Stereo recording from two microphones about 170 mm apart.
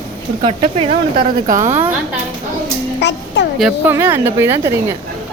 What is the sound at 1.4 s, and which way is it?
Speech, 50° right (ahead or behind).